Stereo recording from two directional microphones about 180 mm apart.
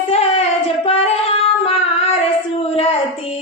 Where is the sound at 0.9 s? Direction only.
35° left (ahead or behind).